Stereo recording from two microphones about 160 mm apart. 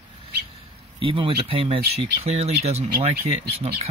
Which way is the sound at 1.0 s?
30° right (ahead or behind).